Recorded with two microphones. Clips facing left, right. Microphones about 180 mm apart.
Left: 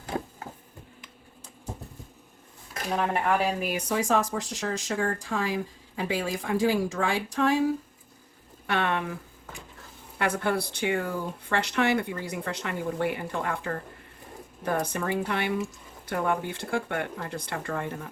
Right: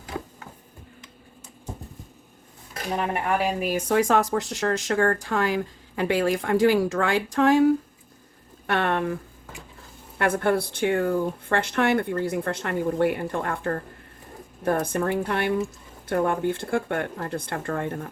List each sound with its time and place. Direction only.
3.6 s speech: 50° right (ahead or behind)
10.2 s speech: 55° right (ahead or behind)